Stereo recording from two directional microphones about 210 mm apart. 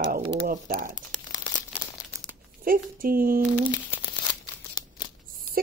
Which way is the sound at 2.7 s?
45° right (ahead or behind).